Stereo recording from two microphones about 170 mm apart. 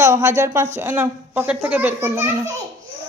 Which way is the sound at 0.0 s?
15° right (ahead or behind).